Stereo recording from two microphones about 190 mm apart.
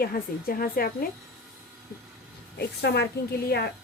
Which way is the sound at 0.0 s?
50° left (ahead or behind).